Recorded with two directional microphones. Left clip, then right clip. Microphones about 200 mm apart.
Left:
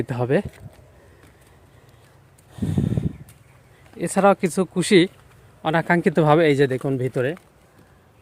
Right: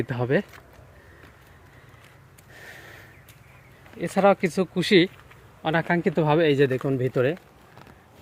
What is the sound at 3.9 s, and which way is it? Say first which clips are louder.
Speech: left 2 dB; 25° left (ahead or behind).